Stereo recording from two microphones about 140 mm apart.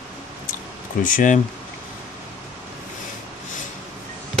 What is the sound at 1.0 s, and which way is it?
Speech, 70° left (ahead or behind).